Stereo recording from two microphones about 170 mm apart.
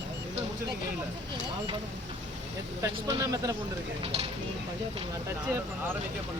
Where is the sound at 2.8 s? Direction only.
20° right (ahead or behind).